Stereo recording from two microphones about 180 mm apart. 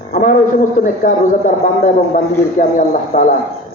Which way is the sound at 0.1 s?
50° left (ahead or behind).